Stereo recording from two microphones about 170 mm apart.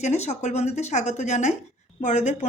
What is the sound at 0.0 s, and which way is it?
A woman's voice, 40° left (ahead or behind).